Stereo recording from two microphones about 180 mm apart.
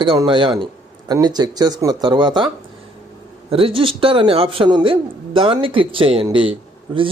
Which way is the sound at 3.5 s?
30° right (ahead or behind).